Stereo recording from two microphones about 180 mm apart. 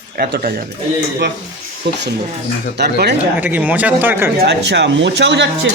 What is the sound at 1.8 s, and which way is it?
Speech, 70° right (ahead or behind).